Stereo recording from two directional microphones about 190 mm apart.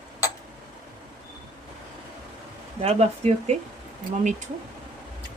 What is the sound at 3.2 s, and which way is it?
Speech, 35° right (ahead or behind).